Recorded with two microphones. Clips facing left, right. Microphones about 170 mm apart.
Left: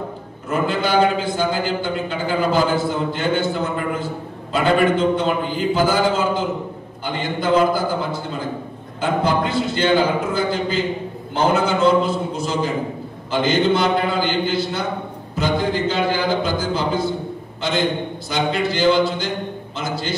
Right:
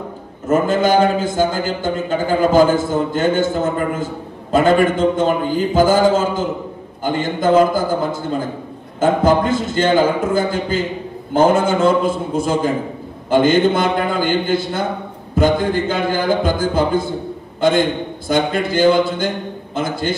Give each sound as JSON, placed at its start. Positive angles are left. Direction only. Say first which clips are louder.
{"t": 0.5, "sound": "a man's voice", "louder": "right 6 dB", "side_deg": -45}